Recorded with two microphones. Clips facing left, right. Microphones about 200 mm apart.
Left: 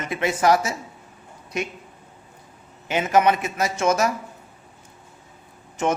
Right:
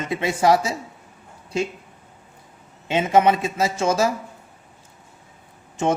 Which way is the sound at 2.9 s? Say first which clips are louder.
Right 2 dB; 25° right (ahead or behind).